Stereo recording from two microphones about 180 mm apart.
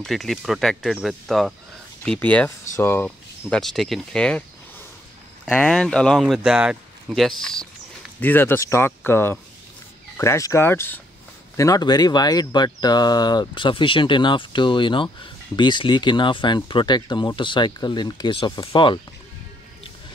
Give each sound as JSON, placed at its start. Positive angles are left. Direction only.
{"t": 0.0, "sound": "speech", "side_deg": 0}